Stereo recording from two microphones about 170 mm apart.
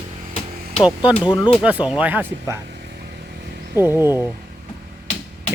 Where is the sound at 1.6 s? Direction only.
5° right (ahead or behind).